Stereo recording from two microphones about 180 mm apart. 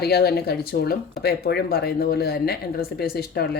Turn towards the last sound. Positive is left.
turn(degrees=60)  # may be behind; listen again after turning